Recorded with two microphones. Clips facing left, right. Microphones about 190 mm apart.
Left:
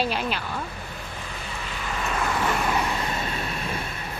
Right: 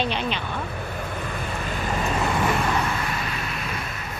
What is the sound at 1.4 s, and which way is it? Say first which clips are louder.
Vehicle: right 5 dB; 50° right (ahead or behind).